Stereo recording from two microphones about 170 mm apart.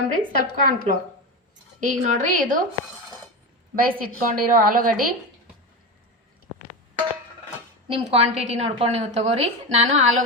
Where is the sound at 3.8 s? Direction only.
55° right (ahead or behind).